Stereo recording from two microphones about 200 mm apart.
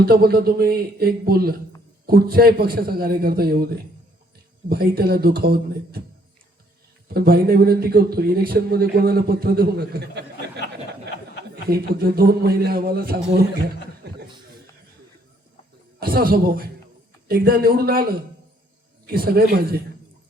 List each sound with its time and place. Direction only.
0.0 s a man's voice: 50° right (ahead or behind)
4.7 s a man's voice: 50° right (ahead or behind)
7.1 s a man's voice: 50° right (ahead or behind)
11.7 s a man's voice: 50° right (ahead or behind)
16.0 s a man's voice: 50° right (ahead or behind)
19.0 s a man's voice: 50° right (ahead or behind)